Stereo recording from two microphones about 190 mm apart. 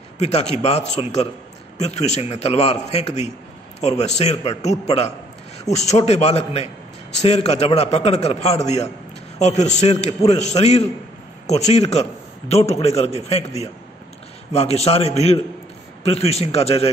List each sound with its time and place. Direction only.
0.2 s a man's voice: 35° left (ahead or behind)